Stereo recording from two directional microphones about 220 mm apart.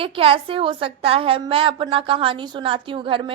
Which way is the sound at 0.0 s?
25° right (ahead or behind).